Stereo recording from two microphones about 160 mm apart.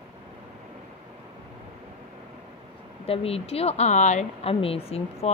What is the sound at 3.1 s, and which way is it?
Speech, 35° left (ahead or behind).